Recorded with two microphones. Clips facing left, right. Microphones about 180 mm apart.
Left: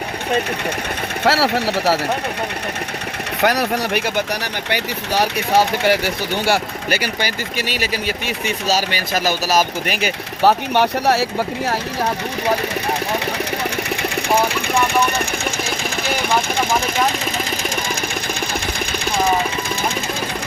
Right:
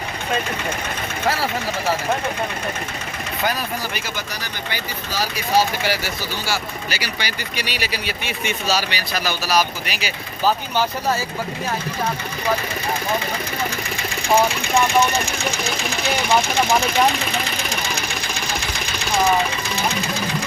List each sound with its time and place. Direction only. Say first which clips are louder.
1.2 s speech: left 6 dB; 75° left (ahead or behind)
3.4 s speech: left 7 dB; 75° left (ahead or behind)